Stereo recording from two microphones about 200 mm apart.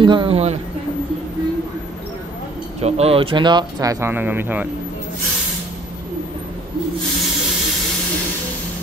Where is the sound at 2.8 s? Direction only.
30° right (ahead or behind); by 4.7 s 10° right (ahead or behind).